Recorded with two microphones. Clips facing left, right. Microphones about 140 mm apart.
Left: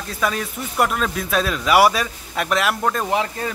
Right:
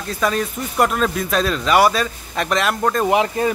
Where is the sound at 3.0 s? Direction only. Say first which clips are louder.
Right 5 dB; 20° right (ahead or behind).